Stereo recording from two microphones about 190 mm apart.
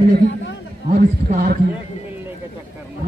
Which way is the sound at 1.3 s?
50° right (ahead or behind).